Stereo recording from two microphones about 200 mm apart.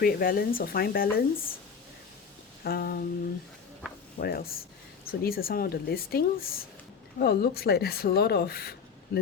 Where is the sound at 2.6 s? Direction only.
50° left (ahead or behind).